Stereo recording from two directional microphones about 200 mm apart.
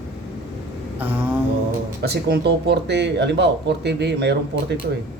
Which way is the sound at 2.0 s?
55° right (ahead or behind).